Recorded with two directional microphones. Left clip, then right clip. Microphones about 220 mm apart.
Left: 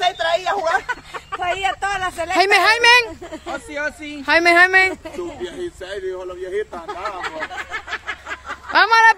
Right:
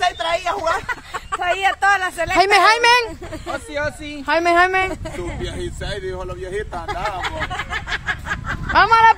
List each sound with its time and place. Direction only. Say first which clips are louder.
0.0 s a sound: left 1 dB; 15° left (ahead or behind)
1.4 s a sound: right 4 dB; 25° right (ahead or behind)
2.3 s speech: right 1 dB; 5° right (ahead or behind)
4.3 s a woman's voice: left 3 dB; 5° left (ahead or behind)
5.4 s speech: even; 35° right (ahead or behind)
6.9 s speech: right 3 dB; 50° right (ahead or behind)
8.7 s a woman's voice: even; 15° left (ahead or behind)